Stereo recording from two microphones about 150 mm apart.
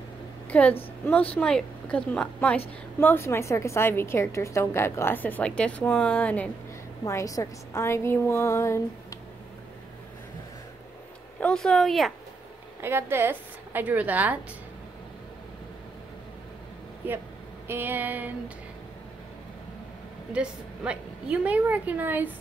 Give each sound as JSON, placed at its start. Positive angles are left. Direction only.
{"t": 0.5, "sound": "a woman's voice", "side_deg": 10}
{"t": 7.1, "sound": "a woman's voice", "side_deg": 20}
{"t": 11.3, "sound": "speech", "side_deg": 5}
{"t": 12.8, "sound": "a woman's voice", "side_deg": -15}
{"t": 17.0, "sound": "a woman's voice", "side_deg": -15}
{"t": 20.3, "sound": "a woman's voice", "side_deg": -5}